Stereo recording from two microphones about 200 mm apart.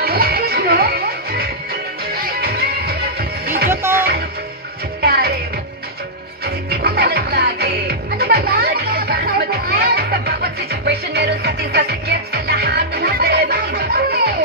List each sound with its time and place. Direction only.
0.0 s music: 50° right (ahead or behind)
5.0 s music: 50° right (ahead or behind)
6.4 s music: 50° right (ahead or behind)